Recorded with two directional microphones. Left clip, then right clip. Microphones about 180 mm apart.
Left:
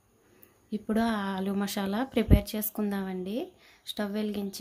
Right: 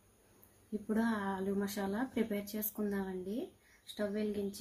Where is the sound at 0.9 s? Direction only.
65° left (ahead or behind).